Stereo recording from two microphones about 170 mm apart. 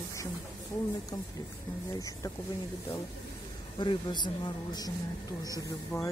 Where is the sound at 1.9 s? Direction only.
20° left (ahead or behind).